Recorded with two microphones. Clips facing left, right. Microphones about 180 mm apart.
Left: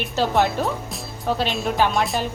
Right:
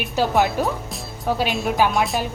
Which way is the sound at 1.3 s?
10° right (ahead or behind).